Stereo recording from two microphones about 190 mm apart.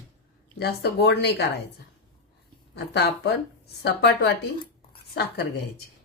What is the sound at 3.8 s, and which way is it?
Speech, 70° left (ahead or behind).